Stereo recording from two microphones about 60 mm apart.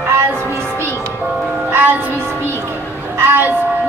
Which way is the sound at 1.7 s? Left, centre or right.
Right.